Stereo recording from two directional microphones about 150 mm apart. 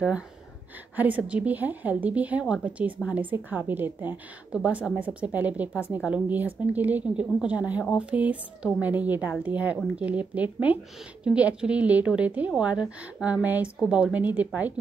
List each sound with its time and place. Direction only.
0.9 s a woman's voice: 10° right (ahead or behind)